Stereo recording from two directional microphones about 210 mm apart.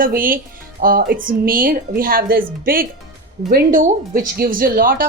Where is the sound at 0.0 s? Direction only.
40° right (ahead or behind).